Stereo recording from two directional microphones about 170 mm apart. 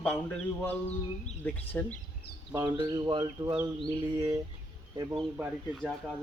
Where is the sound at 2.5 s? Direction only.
20° right (ahead or behind).